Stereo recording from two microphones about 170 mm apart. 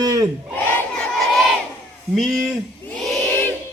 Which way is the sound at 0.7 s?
10° left (ahead or behind).